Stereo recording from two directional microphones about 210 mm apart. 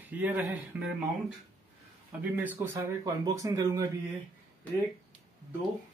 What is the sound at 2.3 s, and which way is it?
Speech, 10° right (ahead or behind).